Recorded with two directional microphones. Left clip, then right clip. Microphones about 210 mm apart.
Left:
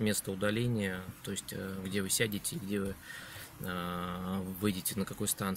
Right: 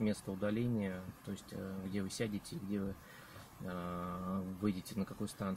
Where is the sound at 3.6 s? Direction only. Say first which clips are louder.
Left 6 dB; 15° left (ahead or behind).